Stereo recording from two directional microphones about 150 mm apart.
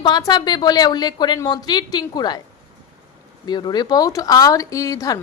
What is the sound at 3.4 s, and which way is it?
A woman's voice, 30° left (ahead or behind).